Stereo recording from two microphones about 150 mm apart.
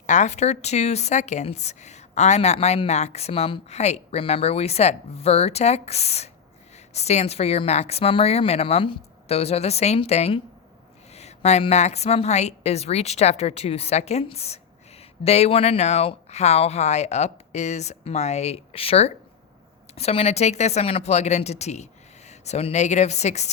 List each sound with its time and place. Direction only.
0.0 s a woman's voice: 50° left (ahead or behind)